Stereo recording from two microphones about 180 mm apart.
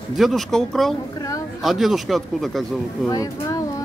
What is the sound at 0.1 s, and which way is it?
Speech, centre (ahead or behind).